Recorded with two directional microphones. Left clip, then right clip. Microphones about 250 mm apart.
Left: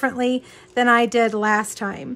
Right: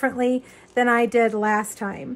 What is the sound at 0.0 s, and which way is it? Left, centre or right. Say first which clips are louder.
A woman's voice: left 1 dB; centre.